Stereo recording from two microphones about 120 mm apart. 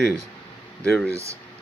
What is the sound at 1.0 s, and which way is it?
Speech, 25° right (ahead or behind).